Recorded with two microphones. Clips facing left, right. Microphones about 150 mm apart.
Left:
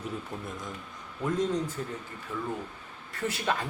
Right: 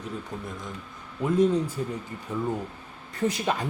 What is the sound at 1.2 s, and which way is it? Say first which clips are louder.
A man's voice: right 6 dB; 10° right (ahead or behind).